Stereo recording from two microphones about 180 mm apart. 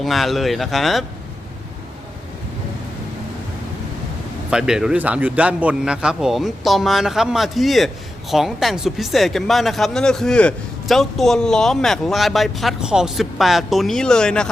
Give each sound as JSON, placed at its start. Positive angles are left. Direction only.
{"t": 0.0, "sound": "speech", "side_deg": 0}
{"t": 4.5, "sound": "speech", "side_deg": -5}